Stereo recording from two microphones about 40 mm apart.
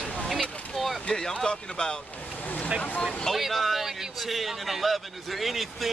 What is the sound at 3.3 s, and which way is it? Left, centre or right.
A man's voice, centre.